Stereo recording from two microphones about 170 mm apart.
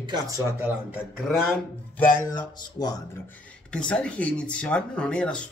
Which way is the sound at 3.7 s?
5° left (ahead or behind).